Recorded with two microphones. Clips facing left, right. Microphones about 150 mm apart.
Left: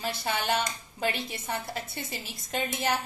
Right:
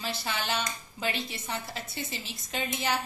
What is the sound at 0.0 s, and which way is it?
A woman's voice, 55° left (ahead or behind).